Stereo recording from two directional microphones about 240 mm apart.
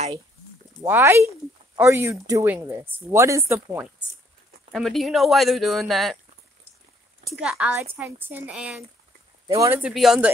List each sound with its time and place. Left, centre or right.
0.8 s a woman's voice: centre
7.3 s a woman's voice: centre